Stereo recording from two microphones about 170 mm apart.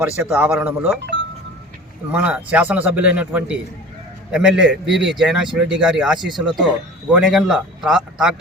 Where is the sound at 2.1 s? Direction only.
10° right (ahead or behind).